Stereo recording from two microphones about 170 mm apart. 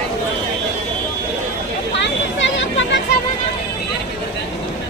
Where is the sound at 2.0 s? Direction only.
90° left.